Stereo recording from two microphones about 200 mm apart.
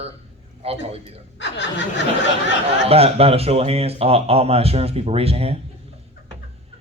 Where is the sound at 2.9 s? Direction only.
30° right (ahead or behind).